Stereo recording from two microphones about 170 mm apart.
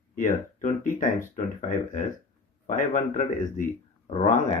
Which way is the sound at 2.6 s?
50° left (ahead or behind).